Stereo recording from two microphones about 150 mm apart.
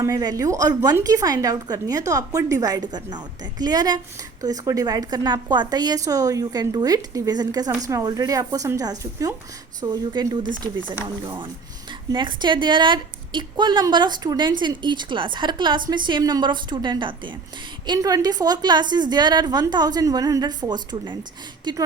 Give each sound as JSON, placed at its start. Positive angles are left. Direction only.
{"t": 0.0, "sound": "a woman's voice", "side_deg": -25}
{"t": 12.1, "sound": "a woman's voice", "side_deg": -30}